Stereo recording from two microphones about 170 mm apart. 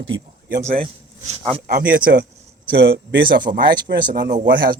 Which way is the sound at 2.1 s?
65° right (ahead or behind).